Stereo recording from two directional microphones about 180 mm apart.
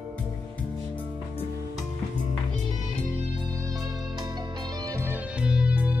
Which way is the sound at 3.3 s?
20° right (ahead or behind).